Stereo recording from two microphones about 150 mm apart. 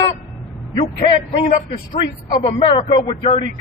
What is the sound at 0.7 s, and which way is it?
A man's voice, 25° left (ahead or behind).